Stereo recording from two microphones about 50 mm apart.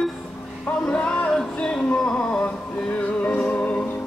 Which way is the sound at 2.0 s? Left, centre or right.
Left.